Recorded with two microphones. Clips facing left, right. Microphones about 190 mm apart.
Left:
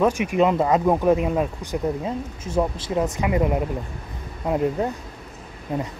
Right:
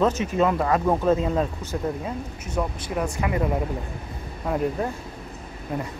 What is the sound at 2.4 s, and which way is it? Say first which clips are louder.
Speech: left 5 dB; 25° left (ahead or behind).